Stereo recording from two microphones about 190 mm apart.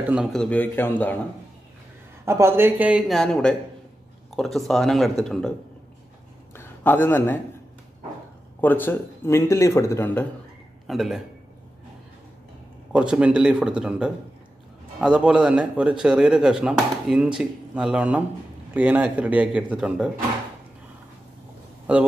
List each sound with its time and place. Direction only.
0.1 s speech: centre (ahead or behind)
2.2 s a man's voice: 15° right (ahead or behind); by 5.5 s 5° left (ahead or behind)
6.5 s a sound: 10° left (ahead or behind)
8.5 s speech: 10° left (ahead or behind)
10.9 s speech: centre (ahead or behind)
12.9 s a man's voice: 5° right (ahead or behind)
21.9 s a man's voice: 5° right (ahead or behind)